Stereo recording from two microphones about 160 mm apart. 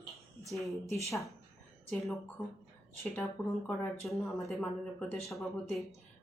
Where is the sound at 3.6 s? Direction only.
15° left (ahead or behind).